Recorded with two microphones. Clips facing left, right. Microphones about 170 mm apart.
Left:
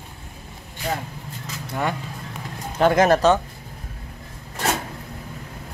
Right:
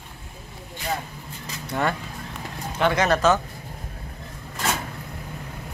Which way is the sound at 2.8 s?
45° left (ahead or behind).